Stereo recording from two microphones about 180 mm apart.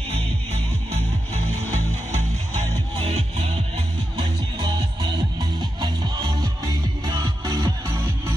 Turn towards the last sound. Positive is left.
turn(degrees=-20)  # may be behind; listen again after turning